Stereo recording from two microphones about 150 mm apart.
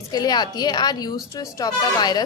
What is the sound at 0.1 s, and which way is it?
A woman's voice, 25° left (ahead or behind).